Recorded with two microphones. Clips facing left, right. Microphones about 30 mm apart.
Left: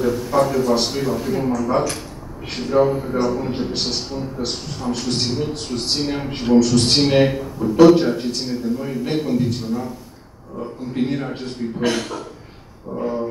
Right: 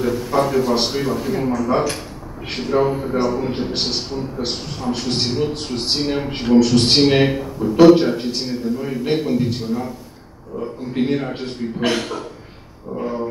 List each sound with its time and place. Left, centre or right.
0.0 s a man's voice: centre
1.5 s a man's voice: centre